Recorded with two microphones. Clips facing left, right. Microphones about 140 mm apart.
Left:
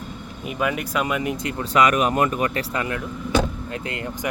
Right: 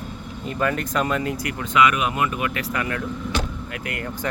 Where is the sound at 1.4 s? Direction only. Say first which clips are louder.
Left 1 dB; 35° left (ahead or behind).